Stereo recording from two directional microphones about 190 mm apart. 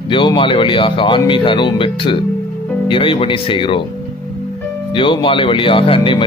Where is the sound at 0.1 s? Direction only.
25° left (ahead or behind).